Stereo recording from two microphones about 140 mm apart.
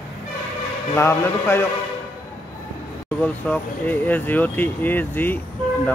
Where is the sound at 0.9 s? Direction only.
20° left (ahead or behind).